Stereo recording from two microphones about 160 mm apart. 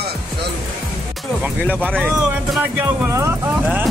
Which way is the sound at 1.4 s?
10° right (ahead or behind).